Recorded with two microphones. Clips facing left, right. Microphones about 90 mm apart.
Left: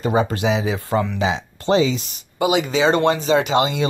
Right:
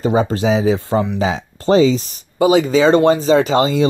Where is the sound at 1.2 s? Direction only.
40° right (ahead or behind).